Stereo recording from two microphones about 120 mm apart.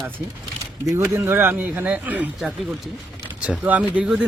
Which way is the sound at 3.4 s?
10° right (ahead or behind).